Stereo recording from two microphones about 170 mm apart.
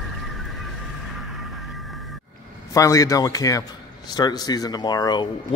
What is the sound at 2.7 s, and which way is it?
Speech, 20° left (ahead or behind).